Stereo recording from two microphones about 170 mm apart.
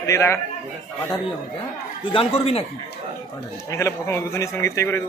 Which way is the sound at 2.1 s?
35° left (ahead or behind).